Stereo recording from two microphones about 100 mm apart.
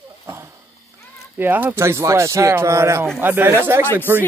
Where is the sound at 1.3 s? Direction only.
20° right (ahead or behind).